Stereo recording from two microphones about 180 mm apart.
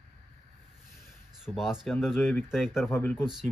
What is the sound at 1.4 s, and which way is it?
Speech, 5° right (ahead or behind).